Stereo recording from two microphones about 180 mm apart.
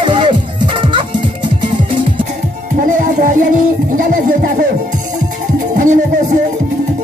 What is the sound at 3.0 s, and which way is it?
Music, 45° right (ahead or behind).